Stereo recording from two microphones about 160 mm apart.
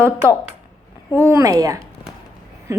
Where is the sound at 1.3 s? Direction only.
20° right (ahead or behind).